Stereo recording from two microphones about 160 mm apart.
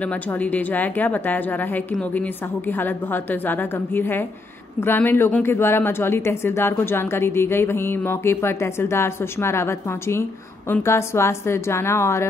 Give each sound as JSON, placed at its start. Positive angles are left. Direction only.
{"t": 0.0, "sound": "speech", "side_deg": 10}